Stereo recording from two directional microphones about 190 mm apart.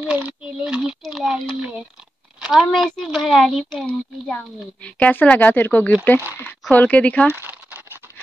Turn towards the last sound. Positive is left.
turn(degrees=-10)  # may be behind; listen again after turning